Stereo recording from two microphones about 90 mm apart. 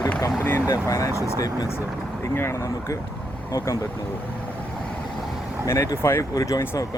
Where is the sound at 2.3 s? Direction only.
30° left (ahead or behind).